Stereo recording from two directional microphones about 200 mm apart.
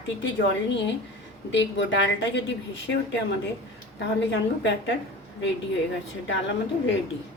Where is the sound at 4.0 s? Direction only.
60° left (ahead or behind).